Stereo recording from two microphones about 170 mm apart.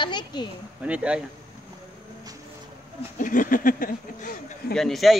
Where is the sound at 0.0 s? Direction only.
25° left (ahead or behind).